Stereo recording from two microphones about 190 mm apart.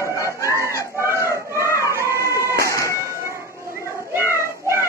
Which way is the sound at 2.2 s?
15° left (ahead or behind).